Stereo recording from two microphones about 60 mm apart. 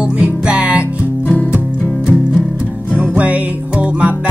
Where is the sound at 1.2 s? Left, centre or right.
Left.